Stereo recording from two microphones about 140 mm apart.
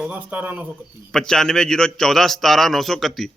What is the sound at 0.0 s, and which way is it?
Speech, 10° right (ahead or behind).